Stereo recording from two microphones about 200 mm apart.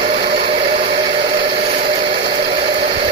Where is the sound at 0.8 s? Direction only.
55° right (ahead or behind).